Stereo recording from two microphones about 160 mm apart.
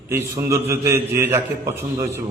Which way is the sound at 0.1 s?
15° right (ahead or behind).